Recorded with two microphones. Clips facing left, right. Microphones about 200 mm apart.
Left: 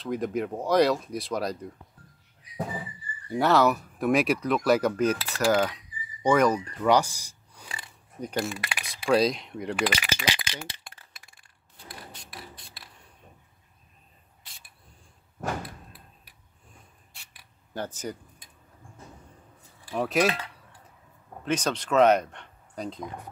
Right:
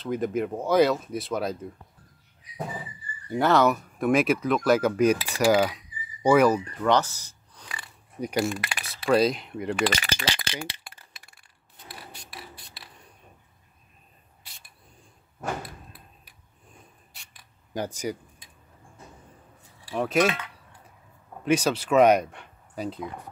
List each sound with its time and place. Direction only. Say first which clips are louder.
0.0 s speech: right 2 dB; centre (ahead or behind)
3.3 s speech: right 1 dB; centre (ahead or behind)
4.9 s cutlery: right 4 dB; 15° right (ahead or behind)
6.8 s speech: left 3 dB; 10° left (ahead or behind)
8.2 s cutlery: right 4 dB; 10° right (ahead or behind)
8.5 s a sound: right 4 dB; centre (ahead or behind)
9.1 s speech: right 1 dB; centre (ahead or behind)
12.3 s music: even; centre (ahead or behind)
17.1 s a sound: right 1 dB; 5° left (ahead or behind)
17.7 s cutlery: right 4 dB; 10° right (ahead or behind)
19.9 s speech: right 2 dB; centre (ahead or behind)
20.2 s speech: even; 35° left (ahead or behind)
21.5 s speech: right 4 dB; 10° right (ahead or behind)